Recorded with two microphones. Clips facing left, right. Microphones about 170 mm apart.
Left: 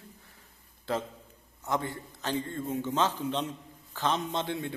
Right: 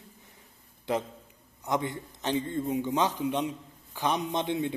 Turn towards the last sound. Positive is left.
turn(degrees=-20)  # may be behind; listen again after turning